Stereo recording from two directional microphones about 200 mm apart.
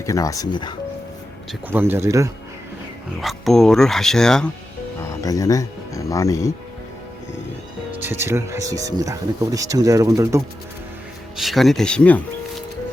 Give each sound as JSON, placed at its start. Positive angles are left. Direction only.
{"t": 0.0, "sound": "speech", "side_deg": 15}
{"t": 1.6, "sound": "speech", "side_deg": -10}
{"t": 3.2, "sound": "speech", "side_deg": 0}
{"t": 5.2, "sound": "speech", "side_deg": 15}
{"t": 7.9, "sound": "speech", "side_deg": -10}
{"t": 11.3, "sound": "speech", "side_deg": 0}